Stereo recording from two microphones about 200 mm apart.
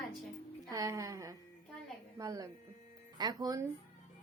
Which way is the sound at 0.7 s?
15° right (ahead or behind).